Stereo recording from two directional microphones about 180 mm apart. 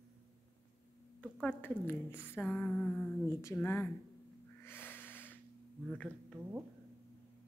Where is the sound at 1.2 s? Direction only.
5° left (ahead or behind).